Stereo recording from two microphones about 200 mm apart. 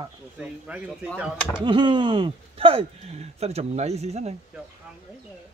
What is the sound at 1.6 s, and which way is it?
Speech, 25° right (ahead or behind).